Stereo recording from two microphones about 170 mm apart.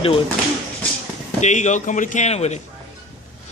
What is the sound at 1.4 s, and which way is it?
Speech, 45° left (ahead or behind).